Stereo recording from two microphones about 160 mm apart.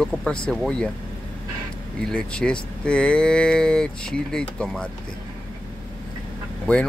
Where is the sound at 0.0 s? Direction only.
5° left (ahead or behind).